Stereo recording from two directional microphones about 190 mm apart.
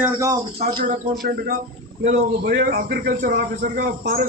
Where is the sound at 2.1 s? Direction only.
55° right (ahead or behind).